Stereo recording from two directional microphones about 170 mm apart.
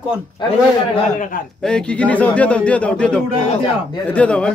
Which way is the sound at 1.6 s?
5° left (ahead or behind).